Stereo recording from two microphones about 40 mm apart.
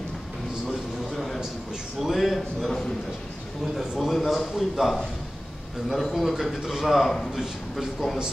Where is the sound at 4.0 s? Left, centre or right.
Centre.